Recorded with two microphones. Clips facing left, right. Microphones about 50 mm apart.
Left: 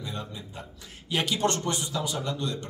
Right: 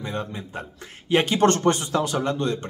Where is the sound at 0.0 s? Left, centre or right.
Right.